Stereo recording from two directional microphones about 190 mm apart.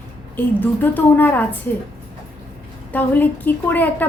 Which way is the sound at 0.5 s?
10° left (ahead or behind).